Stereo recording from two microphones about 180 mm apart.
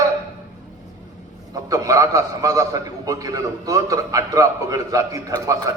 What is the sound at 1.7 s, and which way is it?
A man's voice, 20° right (ahead or behind).